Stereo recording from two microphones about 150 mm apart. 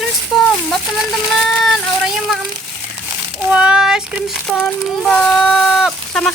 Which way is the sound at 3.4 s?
5° right (ahead or behind).